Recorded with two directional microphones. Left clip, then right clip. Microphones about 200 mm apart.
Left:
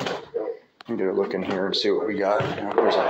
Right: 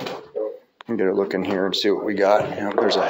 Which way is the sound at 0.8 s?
45° right (ahead or behind).